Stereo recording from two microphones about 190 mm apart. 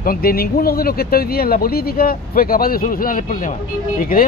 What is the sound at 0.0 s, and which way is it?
Speech, 50° left (ahead or behind).